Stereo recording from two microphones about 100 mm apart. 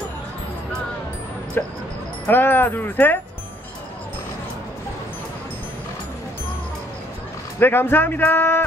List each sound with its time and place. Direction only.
1.6 s speech: 20° left (ahead or behind)
7.5 s speech: 20° left (ahead or behind)